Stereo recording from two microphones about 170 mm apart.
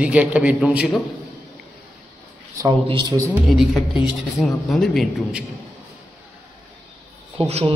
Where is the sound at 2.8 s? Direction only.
25° right (ahead or behind).